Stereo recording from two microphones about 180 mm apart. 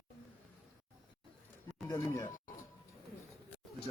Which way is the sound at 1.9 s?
15° left (ahead or behind).